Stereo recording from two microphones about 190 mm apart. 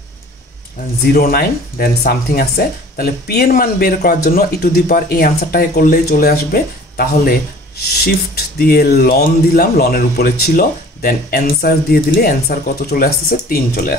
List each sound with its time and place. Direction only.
1.1 s speech: 50° left (ahead or behind)